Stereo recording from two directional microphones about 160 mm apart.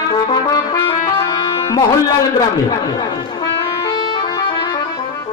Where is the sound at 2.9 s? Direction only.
25° left (ahead or behind).